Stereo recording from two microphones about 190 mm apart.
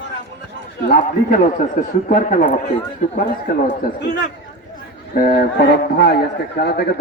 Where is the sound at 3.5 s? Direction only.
55° left (ahead or behind).